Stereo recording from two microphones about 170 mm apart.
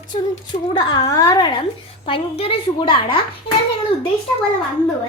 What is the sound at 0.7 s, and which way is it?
A woman's voice, 25° left (ahead or behind).